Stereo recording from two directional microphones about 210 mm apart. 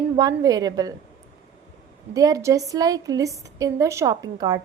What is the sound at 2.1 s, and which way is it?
A woman's voice, 15° right (ahead or behind).